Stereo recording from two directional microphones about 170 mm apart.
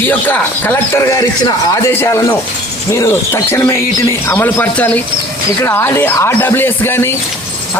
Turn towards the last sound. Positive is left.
turn(degrees=15)  # may be behind; listen again after turning